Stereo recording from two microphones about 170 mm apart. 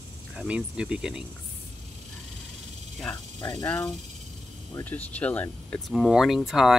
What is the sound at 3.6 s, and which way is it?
Speech, 10° left (ahead or behind).